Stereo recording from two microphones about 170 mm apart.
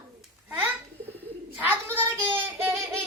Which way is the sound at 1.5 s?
10° right (ahead or behind).